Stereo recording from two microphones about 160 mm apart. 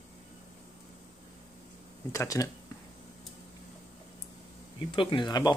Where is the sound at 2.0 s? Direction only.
20° left (ahead or behind).